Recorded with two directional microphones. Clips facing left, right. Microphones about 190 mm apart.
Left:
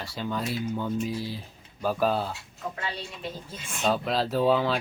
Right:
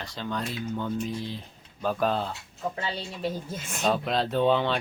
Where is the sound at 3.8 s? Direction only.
Centre (ahead or behind).